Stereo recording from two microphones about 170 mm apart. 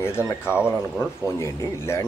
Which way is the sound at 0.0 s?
15° left (ahead or behind).